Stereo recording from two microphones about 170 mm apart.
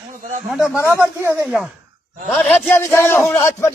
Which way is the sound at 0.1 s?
55° right (ahead or behind).